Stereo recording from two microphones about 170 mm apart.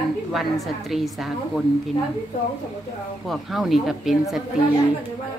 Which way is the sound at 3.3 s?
Centre (ahead or behind).